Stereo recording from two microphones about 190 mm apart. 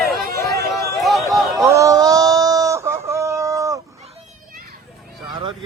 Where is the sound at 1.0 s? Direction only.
Centre (ahead or behind).